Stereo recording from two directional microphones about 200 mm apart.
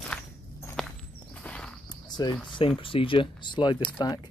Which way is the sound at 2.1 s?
20° left (ahead or behind).